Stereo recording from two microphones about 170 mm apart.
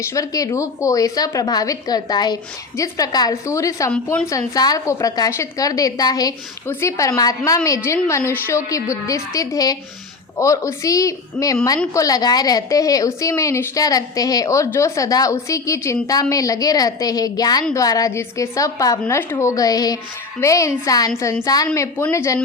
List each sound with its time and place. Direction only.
0.0 s a woman's voice: 20° left (ahead or behind)